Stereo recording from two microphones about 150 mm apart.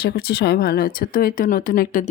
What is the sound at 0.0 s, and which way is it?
Speech, 90° left.